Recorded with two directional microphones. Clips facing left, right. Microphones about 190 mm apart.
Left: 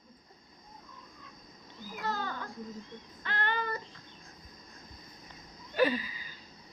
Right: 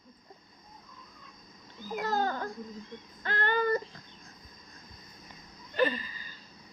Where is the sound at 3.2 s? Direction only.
45° right (ahead or behind).